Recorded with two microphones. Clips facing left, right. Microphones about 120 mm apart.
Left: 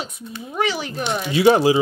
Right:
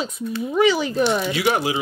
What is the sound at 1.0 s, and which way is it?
Speech, 25° left (ahead or behind).